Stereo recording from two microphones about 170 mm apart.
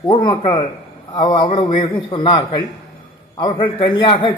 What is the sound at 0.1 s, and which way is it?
Speech, 25° left (ahead or behind).